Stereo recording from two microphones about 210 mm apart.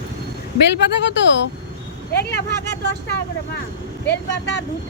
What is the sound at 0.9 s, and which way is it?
Speech, 55° left (ahead or behind).